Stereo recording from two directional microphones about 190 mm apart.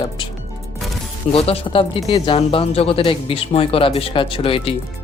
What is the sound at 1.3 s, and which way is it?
Speech, 30° left (ahead or behind).